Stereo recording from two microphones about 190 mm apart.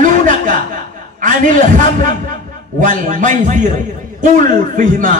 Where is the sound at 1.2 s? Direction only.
45° right (ahead or behind).